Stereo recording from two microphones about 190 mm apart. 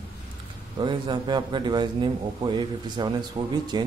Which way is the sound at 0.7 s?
25° right (ahead or behind).